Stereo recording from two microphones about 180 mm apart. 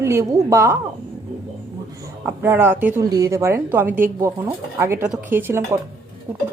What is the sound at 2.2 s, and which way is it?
Speech, 10° right (ahead or behind).